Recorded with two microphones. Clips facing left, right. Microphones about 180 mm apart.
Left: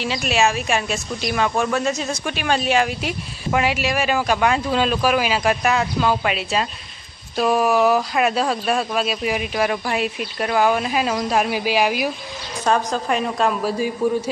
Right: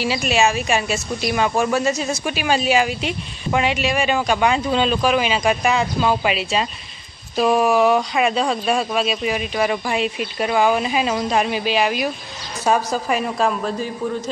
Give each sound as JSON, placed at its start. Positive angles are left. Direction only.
{"t": 0.0, "sound": "speech", "side_deg": 0}
{"t": 12.6, "sound": "speech", "side_deg": -5}